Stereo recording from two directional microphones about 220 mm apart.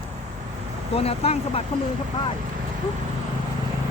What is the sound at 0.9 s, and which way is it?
Speech, 25° left (ahead or behind).